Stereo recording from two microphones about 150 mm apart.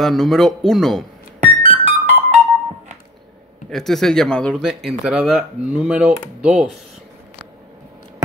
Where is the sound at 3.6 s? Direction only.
Centre (ahead or behind).